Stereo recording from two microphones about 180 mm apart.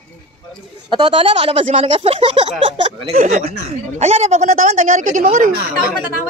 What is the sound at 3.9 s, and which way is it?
A woman's voice, 40° right (ahead or behind).